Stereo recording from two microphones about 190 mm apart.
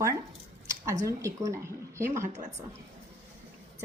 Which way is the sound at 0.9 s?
15° right (ahead or behind).